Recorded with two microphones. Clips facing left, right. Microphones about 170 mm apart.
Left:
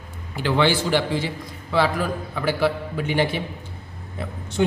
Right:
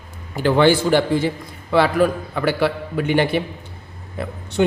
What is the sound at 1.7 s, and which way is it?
A man's voice, 60° right (ahead or behind).